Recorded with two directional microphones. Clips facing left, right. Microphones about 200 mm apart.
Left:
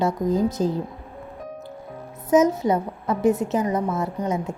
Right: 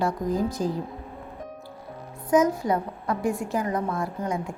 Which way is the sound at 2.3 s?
20° left (ahead or behind).